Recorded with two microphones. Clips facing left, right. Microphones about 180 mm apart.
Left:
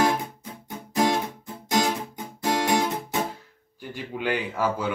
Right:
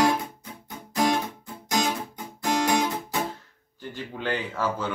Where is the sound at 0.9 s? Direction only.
20° left (ahead or behind).